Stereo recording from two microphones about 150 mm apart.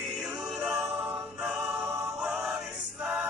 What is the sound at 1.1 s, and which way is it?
Music, 15° right (ahead or behind).